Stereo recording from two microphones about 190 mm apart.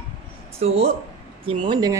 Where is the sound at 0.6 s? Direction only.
30° right (ahead or behind).